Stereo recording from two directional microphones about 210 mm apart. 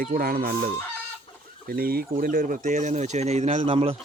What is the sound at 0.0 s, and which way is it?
Speech, 45° right (ahead or behind).